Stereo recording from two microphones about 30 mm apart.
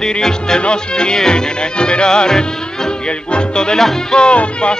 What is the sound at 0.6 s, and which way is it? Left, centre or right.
Music, left.